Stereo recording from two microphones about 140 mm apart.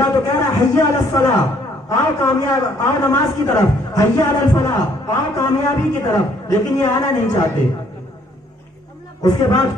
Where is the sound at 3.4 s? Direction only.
25° left (ahead or behind).